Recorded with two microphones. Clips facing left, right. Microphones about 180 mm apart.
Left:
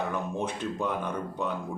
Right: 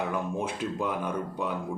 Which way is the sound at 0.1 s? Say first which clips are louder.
Right 1 dB; 10° right (ahead or behind).